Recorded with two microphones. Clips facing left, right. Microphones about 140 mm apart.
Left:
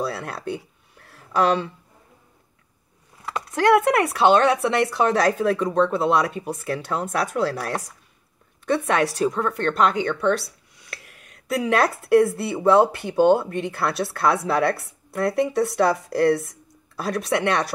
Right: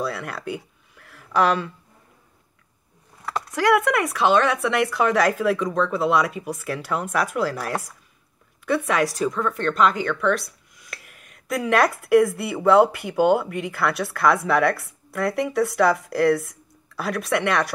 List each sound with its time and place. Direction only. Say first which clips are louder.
0.0 s speech: even; 35° left (ahead or behind)
0.9 s a sound: right 1 dB; 35° left (ahead or behind)
3.7 s speech: left 2 dB; 35° left (ahead or behind)
8.8 s speech: left 1 dB; 35° left (ahead or behind)
10.0 s a sound: left 1 dB; 30° left (ahead or behind)
11.7 s speech: right 1 dB; 30° left (ahead or behind)